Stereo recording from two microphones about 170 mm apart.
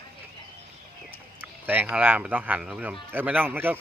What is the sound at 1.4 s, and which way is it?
Speech, 10° right (ahead or behind).